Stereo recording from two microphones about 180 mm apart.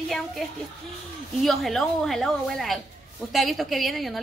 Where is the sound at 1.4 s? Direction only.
Centre (ahead or behind).